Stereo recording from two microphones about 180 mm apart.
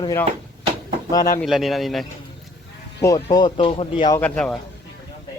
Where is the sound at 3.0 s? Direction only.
20° left (ahead or behind).